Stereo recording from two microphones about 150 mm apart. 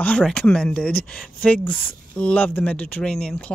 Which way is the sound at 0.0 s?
5° left (ahead or behind).